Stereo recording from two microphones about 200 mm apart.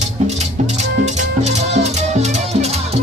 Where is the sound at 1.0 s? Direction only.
35° right (ahead or behind).